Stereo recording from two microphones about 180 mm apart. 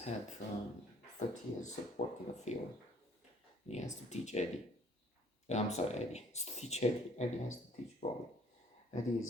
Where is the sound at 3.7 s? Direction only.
40° left (ahead or behind).